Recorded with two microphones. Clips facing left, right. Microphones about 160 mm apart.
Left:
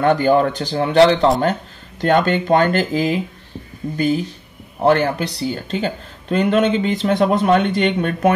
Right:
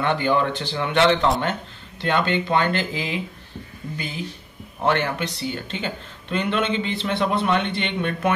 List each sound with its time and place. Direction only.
0.0 s speech: 40° left (ahead or behind)